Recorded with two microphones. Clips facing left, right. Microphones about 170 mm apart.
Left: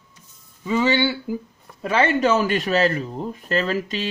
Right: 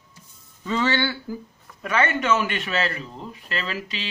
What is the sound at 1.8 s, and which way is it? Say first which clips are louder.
Speech: left 4 dB; 30° left (ahead or behind).